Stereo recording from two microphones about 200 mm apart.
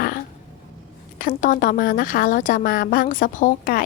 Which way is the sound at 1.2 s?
45° left (ahead or behind).